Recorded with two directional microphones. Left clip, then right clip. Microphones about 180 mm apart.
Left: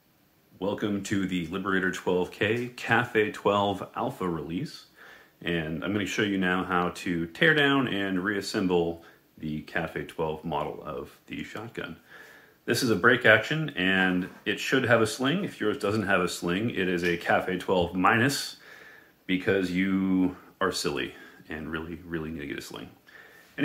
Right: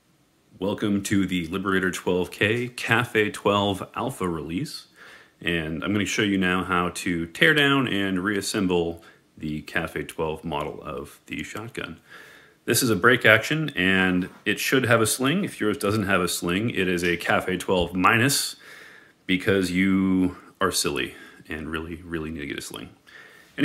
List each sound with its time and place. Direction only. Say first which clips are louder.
0.6 s speech: right 3 dB; 40° right (ahead or behind)